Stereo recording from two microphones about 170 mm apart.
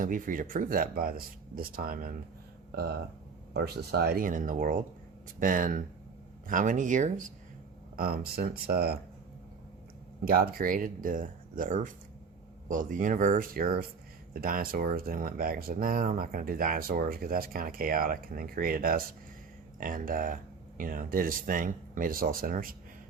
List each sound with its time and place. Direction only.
0.0 s speech: 50° right (ahead or behind)
2.7 s speech: 70° right (ahead or behind); by 7.3 s 50° right (ahead or behind)
7.9 s speech: 60° right (ahead or behind)
10.2 s speech: 60° right (ahead or behind)